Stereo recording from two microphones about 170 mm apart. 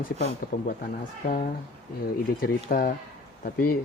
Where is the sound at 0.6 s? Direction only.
55° left (ahead or behind).